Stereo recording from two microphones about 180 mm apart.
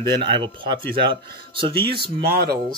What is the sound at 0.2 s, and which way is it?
Speech, 25° right (ahead or behind).